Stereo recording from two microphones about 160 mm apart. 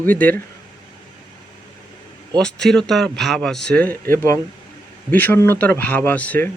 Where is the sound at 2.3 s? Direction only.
5° left (ahead or behind).